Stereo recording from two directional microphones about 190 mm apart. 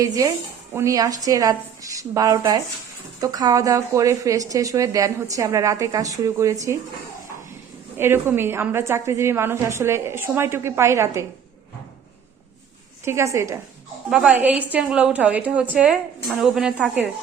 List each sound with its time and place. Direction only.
0.7 s speech: 15° right (ahead or behind)
7.9 s speech: 10° right (ahead or behind)
13.1 s speech: 15° right (ahead or behind)
14.1 s a woman's voice: 5° right (ahead or behind)